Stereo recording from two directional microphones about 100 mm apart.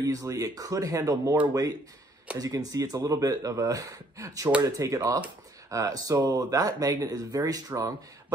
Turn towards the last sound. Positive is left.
turn(degrees=-35)  # may be behind; listen again after turning